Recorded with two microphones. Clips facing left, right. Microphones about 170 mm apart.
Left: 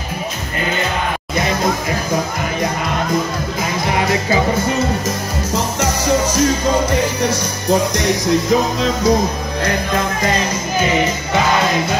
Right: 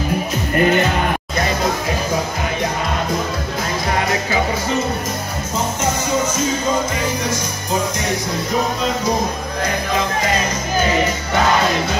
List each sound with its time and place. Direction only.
6.3 s music: 70° left (ahead or behind)